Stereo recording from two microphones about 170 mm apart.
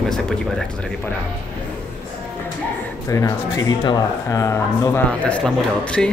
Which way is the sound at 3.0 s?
20° left (ahead or behind).